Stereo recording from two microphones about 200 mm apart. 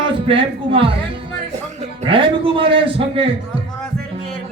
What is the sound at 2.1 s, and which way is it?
A man's voice, 25° right (ahead or behind).